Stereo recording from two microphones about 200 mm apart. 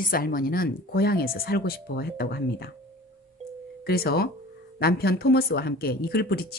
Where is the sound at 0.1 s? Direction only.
45° left (ahead or behind).